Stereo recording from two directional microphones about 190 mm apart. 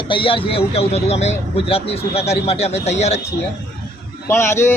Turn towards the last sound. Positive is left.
turn(degrees=15)  # may be behind; listen again after turning